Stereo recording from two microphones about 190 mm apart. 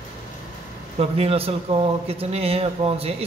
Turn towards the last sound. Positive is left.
turn(degrees=-30)  # may be behind; listen again after turning